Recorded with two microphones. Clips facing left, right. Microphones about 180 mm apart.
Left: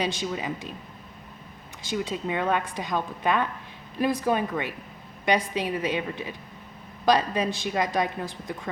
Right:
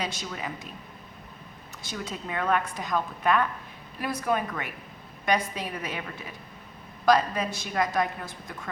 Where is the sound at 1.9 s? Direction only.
20° left (ahead or behind).